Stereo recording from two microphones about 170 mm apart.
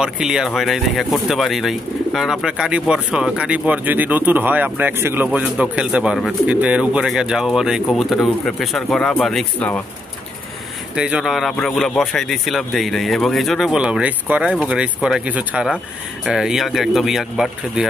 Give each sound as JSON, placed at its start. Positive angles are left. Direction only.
{"t": 0.0, "sound": "speech", "side_deg": -5}
{"t": 11.0, "sound": "speech", "side_deg": -5}